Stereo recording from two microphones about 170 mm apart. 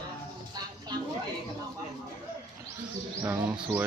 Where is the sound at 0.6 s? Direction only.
25° right (ahead or behind).